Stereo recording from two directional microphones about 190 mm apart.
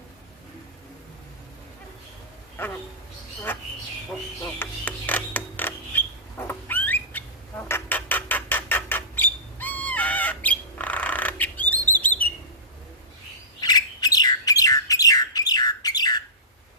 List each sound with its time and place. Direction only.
2.6 s speech: 10° left (ahead or behind)
4.6 s mechanisms: 10° left (ahead or behind)
6.5 s bird: 10° left (ahead or behind)
13.6 s bird: 20° left (ahead or behind)